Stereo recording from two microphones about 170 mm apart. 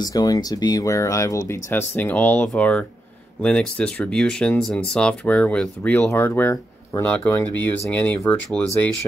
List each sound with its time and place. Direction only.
0.0 s speech: 20° left (ahead or behind)